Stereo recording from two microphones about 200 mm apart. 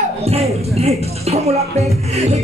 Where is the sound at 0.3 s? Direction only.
30° right (ahead or behind).